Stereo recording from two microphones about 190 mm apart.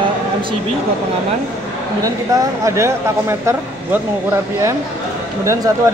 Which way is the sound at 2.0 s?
15° right (ahead or behind).